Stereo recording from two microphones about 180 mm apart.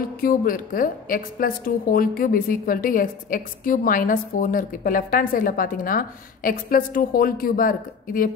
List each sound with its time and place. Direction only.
0.2 s a woman's voice: 50° left (ahead or behind)